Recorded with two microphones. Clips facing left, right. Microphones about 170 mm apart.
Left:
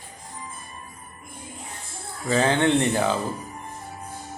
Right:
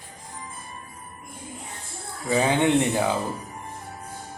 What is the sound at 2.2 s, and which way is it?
Speech, 15° right (ahead or behind).